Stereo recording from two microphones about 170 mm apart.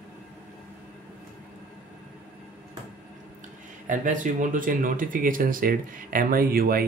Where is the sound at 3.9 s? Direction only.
50° right (ahead or behind).